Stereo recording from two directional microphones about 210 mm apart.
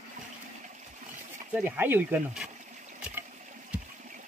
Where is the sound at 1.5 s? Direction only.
10° right (ahead or behind).